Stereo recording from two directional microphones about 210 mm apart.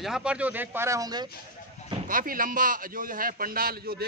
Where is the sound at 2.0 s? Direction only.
40° right (ahead or behind).